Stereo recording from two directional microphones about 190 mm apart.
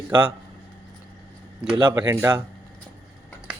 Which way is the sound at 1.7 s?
25° right (ahead or behind).